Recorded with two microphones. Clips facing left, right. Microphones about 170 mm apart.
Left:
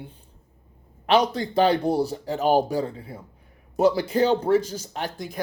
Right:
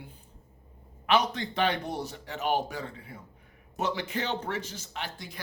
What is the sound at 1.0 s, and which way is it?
Speech, 35° left (ahead or behind).